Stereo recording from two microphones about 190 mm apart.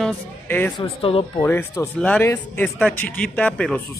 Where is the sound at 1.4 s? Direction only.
15° left (ahead or behind).